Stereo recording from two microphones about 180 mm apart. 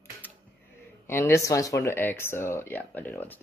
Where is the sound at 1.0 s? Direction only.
15° left (ahead or behind).